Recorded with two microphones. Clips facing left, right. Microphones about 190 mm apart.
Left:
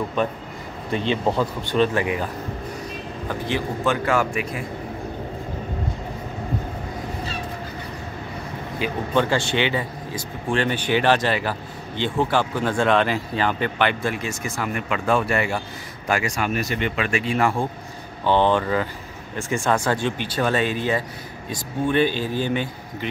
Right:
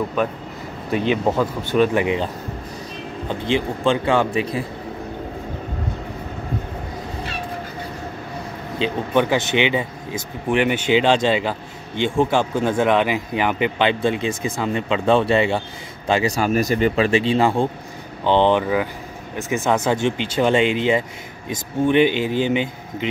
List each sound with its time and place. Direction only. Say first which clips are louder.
0.9 s speech: right 3 dB; 10° right (ahead or behind)
3.3 s a man's voice: right 4 dB; 20° right (ahead or behind)
8.7 s a man's voice: right 3 dB; 20° right (ahead or behind)
16.4 s a man's voice: right 6 dB; 40° right (ahead or behind); by 23.0 s 15° right (ahead or behind)